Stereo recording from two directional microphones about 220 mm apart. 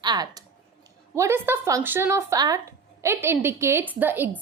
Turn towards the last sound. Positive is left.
turn(degrees=-10)  # may be behind; listen again after turning